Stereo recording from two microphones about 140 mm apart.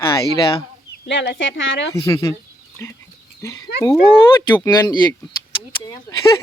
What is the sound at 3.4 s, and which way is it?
Speech, 20° left (ahead or behind).